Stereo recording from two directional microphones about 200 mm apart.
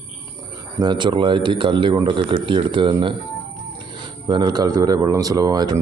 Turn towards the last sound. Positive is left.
turn(degrees=-20)  # may be behind; listen again after turning